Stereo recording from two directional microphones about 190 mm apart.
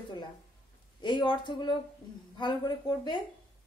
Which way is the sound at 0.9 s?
25° left (ahead or behind).